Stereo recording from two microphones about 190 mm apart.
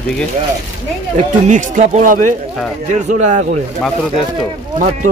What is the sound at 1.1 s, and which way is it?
Speech, 40° right (ahead or behind).